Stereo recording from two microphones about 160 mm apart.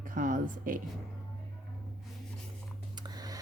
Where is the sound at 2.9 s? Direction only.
25° right (ahead or behind).